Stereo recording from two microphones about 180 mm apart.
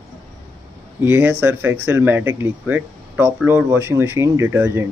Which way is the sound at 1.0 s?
10° right (ahead or behind).